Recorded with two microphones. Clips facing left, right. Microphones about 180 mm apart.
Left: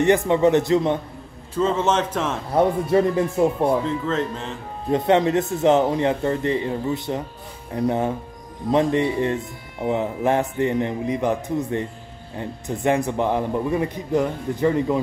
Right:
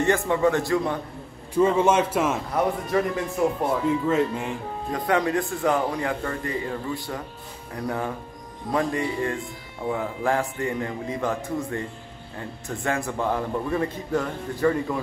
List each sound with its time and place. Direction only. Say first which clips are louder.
0.3 s a man's voice: left 5 dB; 20° left (ahead or behind)
1.8 s speech: right 1 dB; 10° right (ahead or behind)
2.5 s a man's voice: left 9 dB; 30° left (ahead or behind)
3.8 s speech: right 2 dB; 10° right (ahead or behind)
4.9 s a man's voice: left 6 dB; 25° left (ahead or behind)